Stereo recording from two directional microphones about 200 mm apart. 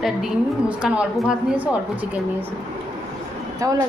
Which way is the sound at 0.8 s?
5° right (ahead or behind).